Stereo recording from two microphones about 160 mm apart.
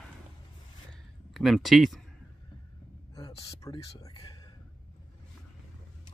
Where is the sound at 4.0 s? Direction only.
20° left (ahead or behind).